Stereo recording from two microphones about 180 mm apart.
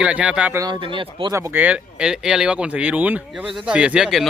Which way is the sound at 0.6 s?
25° right (ahead or behind).